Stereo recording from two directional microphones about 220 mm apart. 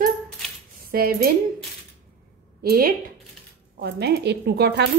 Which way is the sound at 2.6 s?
45° right (ahead or behind).